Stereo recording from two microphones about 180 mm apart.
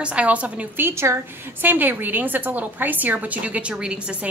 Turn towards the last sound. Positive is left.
turn(degrees=-5)  # may be behind; listen again after turning